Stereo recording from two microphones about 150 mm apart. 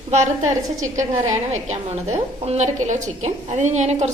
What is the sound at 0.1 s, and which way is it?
A woman's voice, 55° right (ahead or behind).